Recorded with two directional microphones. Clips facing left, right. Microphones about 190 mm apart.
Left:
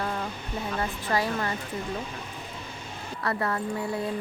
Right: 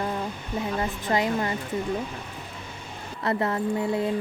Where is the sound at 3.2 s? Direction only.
20° right (ahead or behind).